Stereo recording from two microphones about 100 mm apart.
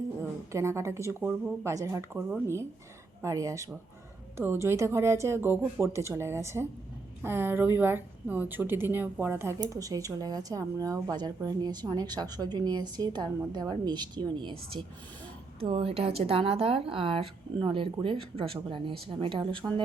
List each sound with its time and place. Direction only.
0.2 s a woman's voice: 25° right (ahead or behind)
9.6 s a woman's voice: 35° right (ahead or behind); by 14.8 s 55° right (ahead or behind)
15.6 s speech: 75° right (ahead or behind); by 19.6 s 55° right (ahead or behind)